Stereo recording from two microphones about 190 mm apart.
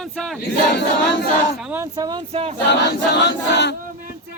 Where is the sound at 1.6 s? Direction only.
10° right (ahead or behind).